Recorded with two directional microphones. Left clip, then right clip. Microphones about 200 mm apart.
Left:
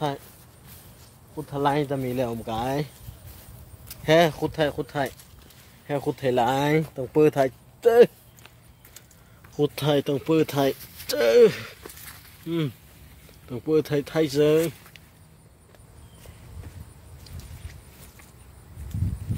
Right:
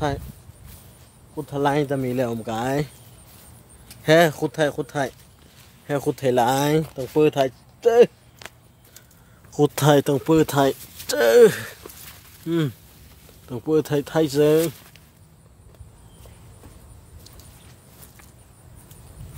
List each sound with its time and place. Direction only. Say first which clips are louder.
1.3 s speech: right 2 dB; 25° right (ahead or behind)
4.0 s speech: right 3 dB; 30° right (ahead or behind); by 7.1 s 15° right (ahead or behind)
7.2 s speech: right 1 dB; centre (ahead or behind)
9.5 s speech: right 6 dB; 30° right (ahead or behind)